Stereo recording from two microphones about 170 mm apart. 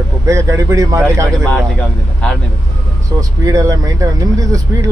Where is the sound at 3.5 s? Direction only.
20° right (ahead or behind).